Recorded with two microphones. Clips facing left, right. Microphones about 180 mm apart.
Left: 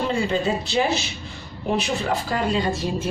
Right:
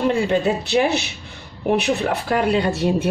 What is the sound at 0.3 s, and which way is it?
A woman's voice, 65° right (ahead or behind).